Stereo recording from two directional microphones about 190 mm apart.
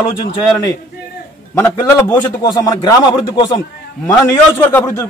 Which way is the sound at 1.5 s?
15° left (ahead or behind).